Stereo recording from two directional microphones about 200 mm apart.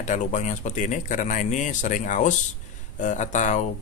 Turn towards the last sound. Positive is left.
turn(degrees=40)  # may be behind; listen again after turning